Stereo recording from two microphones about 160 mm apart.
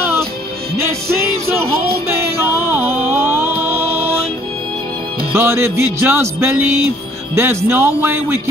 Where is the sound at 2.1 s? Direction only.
15° right (ahead or behind).